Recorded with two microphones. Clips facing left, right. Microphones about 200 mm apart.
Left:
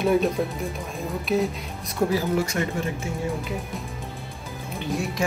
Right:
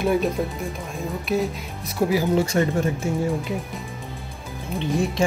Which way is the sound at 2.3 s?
30° right (ahead or behind).